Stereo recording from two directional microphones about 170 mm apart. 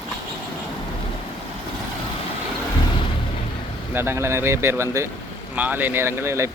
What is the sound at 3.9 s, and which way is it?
Speech, 15° right (ahead or behind).